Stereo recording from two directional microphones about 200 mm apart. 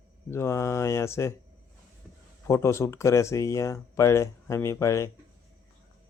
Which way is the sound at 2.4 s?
15° left (ahead or behind).